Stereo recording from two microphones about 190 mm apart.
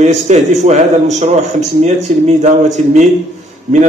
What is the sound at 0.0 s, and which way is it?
A man's voice, 35° right (ahead or behind).